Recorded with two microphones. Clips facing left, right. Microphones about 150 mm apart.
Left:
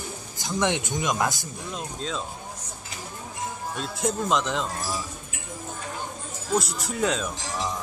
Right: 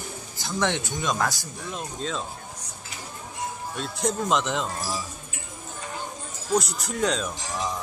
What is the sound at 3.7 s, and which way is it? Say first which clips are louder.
A man's voice: even; centre (ahead or behind).